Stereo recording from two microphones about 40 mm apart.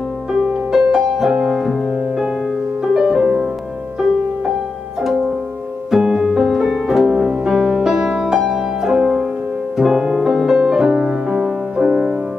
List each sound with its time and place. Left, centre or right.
0.7 s music: centre
2.8 s music: centre
5.9 s music: centre
9.8 s music: centre